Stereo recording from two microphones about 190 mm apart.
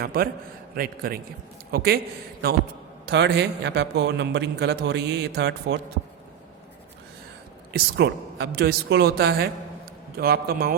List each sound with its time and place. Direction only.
0.0 s a man's voice: 50° right (ahead or behind)
3.1 s a man's voice: 65° right (ahead or behind)
7.7 s a man's voice: 60° right (ahead or behind)